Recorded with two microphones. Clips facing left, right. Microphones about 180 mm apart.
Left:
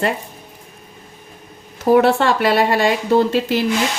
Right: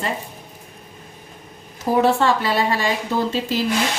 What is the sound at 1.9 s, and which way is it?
Speech, 65° left (ahead or behind).